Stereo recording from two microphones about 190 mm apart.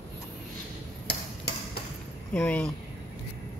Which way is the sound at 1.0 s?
60° left (ahead or behind).